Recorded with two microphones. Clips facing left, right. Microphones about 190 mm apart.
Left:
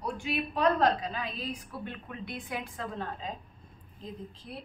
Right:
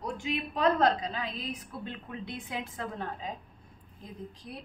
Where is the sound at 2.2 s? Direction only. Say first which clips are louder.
Left 1 dB; 20° right (ahead or behind).